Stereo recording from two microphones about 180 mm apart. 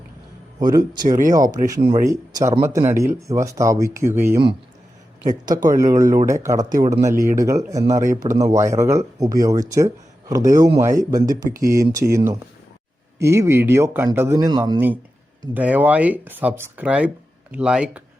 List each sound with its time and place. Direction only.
0.6 s speech: 25° right (ahead or behind)
5.5 s speech: 20° right (ahead or behind)
15.5 s speech: 10° right (ahead or behind)